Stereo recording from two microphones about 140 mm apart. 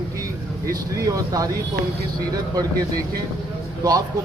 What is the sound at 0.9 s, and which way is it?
Speech, 25° right (ahead or behind).